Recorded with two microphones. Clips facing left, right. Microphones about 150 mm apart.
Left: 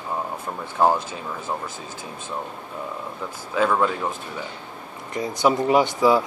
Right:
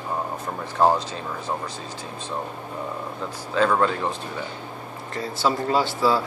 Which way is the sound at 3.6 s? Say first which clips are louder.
Even; 5° left (ahead or behind).